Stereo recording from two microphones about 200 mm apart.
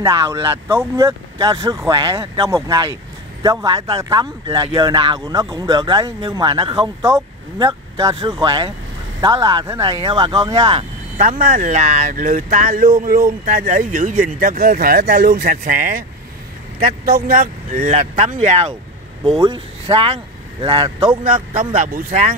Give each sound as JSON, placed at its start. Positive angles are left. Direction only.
{"t": 0.0, "sound": "speech", "side_deg": -15}
{"t": 15.4, "sound": "speech", "side_deg": -40}